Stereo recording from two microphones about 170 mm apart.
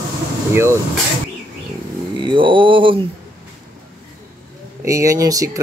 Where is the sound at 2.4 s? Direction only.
30° right (ahead or behind).